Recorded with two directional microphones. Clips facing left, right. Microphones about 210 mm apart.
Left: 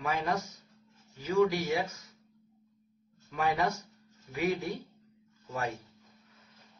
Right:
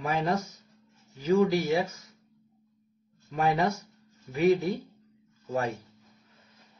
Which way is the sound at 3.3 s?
25° right (ahead or behind).